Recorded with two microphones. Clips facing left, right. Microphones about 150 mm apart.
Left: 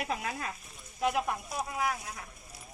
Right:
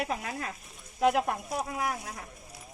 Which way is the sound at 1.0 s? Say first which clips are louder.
Right 5 dB; 60° right (ahead or behind).